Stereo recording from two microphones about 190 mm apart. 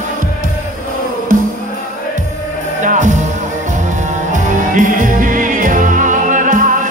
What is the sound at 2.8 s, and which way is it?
Music, 40° right (ahead or behind).